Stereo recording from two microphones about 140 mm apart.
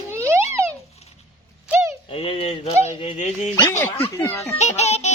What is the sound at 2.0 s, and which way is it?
Speech, 40° left (ahead or behind).